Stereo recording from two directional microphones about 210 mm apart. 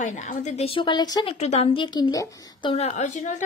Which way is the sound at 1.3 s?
30° left (ahead or behind).